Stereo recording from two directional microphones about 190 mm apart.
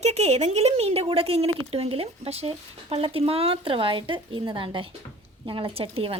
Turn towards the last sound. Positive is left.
turn(degrees=-30)  # may be behind; listen again after turning